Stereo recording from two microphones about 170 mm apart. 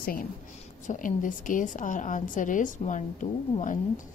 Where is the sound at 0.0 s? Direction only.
55° left (ahead or behind).